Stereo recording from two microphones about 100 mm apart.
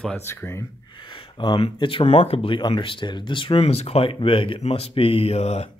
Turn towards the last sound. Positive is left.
turn(degrees=90)